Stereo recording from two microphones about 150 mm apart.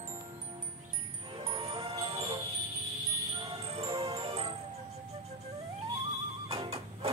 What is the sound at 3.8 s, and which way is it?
Music, 25° right (ahead or behind).